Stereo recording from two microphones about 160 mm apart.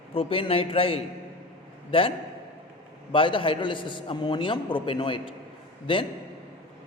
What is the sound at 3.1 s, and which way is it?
A man's voice, 30° left (ahead or behind).